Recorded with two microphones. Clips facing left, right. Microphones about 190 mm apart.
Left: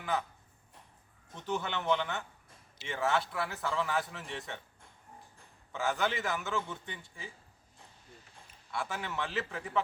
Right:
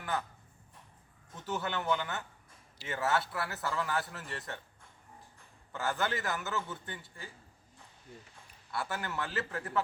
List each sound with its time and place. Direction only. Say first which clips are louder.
0.0 s speech: left 2 dB; centre (ahead or behind)
1.5 s a man's voice: left 1 dB; 5° right (ahead or behind)
5.7 s a man's voice: left 1 dB; centre (ahead or behind)
8.7 s a man's voice: even; centre (ahead or behind)